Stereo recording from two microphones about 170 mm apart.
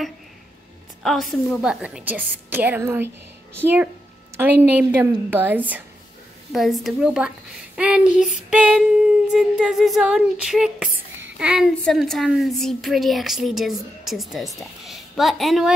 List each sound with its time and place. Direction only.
1.0 s a woman's voice: centre (ahead or behind)